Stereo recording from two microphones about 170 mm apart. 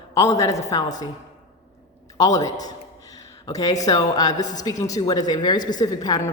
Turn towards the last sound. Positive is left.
turn(degrees=25)  # may be behind; listen again after turning